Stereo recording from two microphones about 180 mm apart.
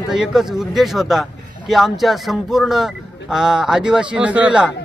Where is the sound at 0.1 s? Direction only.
Centre (ahead or behind).